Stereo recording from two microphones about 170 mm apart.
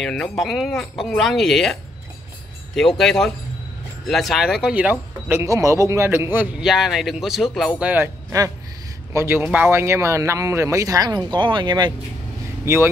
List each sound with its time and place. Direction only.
0.0 s speech: 5° left (ahead or behind); by 11.9 s 25° right (ahead or behind)
12.6 s speech: 15° right (ahead or behind)